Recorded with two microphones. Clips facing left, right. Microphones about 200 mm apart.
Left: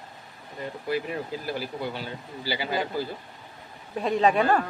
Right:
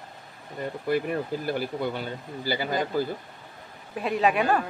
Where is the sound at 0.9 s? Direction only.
50° right (ahead or behind).